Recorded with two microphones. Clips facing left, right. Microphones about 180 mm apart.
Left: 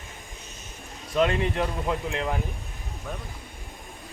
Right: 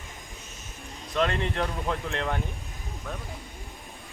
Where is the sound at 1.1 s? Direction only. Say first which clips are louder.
Left 3 dB; 10° left (ahead or behind).